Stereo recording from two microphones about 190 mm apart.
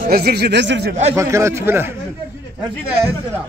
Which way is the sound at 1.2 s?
15° right (ahead or behind).